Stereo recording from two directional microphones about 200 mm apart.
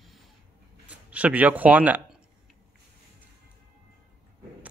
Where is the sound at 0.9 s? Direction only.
5° right (ahead or behind).